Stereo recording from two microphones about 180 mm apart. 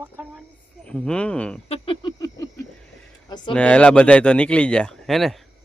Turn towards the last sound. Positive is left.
turn(degrees=0)  # may be behind; listen again after turning